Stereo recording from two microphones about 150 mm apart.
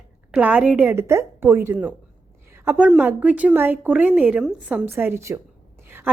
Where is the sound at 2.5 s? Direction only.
15° right (ahead or behind).